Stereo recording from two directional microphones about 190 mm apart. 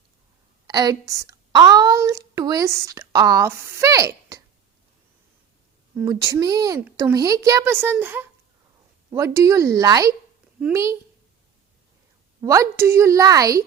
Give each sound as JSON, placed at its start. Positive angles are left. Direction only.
{"t": 0.7, "sound": "a woman's voice", "side_deg": -20}
{"t": 6.0, "sound": "a woman's voice", "side_deg": -15}
{"t": 12.4, "sound": "a woman's voice", "side_deg": -15}